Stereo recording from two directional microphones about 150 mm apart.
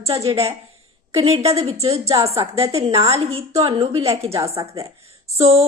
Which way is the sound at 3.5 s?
25° right (ahead or behind).